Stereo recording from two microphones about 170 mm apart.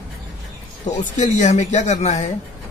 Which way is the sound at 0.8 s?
45° left (ahead or behind).